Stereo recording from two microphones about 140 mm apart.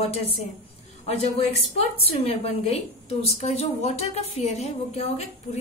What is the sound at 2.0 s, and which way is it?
A woman's voice, 45° left (ahead or behind).